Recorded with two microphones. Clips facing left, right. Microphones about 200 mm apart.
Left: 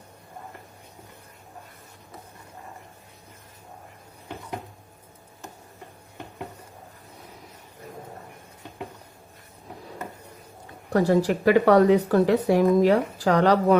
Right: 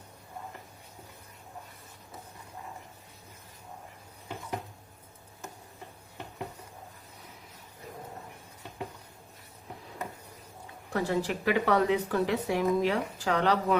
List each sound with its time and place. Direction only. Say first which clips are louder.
10.9 s speech: left 9 dB; 40° left (ahead or behind)